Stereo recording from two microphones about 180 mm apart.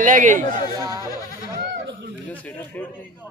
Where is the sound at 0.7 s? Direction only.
20° right (ahead or behind).